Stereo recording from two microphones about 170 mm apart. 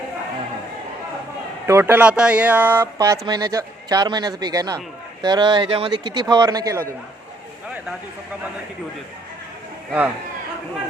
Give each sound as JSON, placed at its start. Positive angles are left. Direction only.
{"t": 1.6, "sound": "speech", "side_deg": -15}